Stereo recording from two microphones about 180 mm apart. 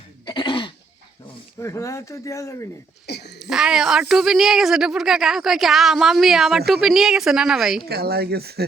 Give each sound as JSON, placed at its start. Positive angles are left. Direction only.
{"t": 0.3, "sound": "throat clearing", "side_deg": 25}
{"t": 1.6, "sound": "speech", "side_deg": 15}
{"t": 3.1, "sound": "a sound", "side_deg": 65}
{"t": 3.3, "sound": "a woman's voice", "side_deg": -5}
{"t": 7.9, "sound": "speech", "side_deg": -60}